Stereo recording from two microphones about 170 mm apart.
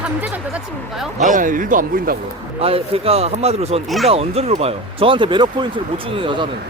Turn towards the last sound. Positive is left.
turn(degrees=-30)  # may be behind; listen again after turning